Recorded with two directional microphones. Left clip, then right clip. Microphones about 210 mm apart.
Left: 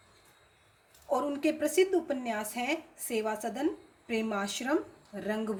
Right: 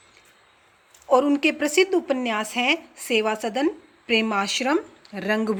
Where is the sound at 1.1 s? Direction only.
35° right (ahead or behind).